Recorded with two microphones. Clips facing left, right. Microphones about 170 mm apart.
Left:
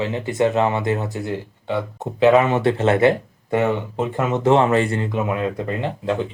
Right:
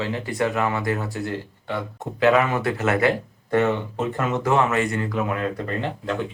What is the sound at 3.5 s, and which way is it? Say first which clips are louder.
Speech: left 1 dB; 15° left (ahead or behind).